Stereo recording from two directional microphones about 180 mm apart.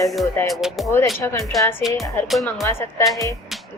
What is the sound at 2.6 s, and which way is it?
Speech, 15° left (ahead or behind).